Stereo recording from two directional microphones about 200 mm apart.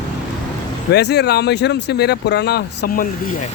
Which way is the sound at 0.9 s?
55° left (ahead or behind).